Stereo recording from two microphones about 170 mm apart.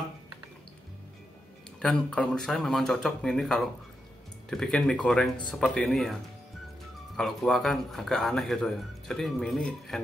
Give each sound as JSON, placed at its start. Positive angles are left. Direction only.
{"t": 1.8, "sound": "speech", "side_deg": 5}
{"t": 7.2, "sound": "speech", "side_deg": 0}